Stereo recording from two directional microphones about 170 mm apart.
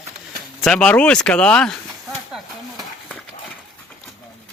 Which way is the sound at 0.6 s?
5° left (ahead or behind).